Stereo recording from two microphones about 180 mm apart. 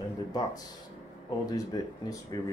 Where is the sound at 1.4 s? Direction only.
20° left (ahead or behind).